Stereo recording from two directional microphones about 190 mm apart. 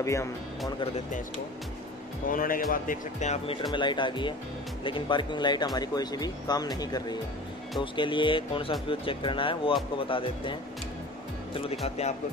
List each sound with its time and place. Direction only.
0.0 s speech: 15° left (ahead or behind)
0.7 s speech: 35° left (ahead or behind)
2.2 s speech: 45° left (ahead or behind)
3.7 s speech: 25° left (ahead or behind)
11.8 s speech: 35° left (ahead or behind)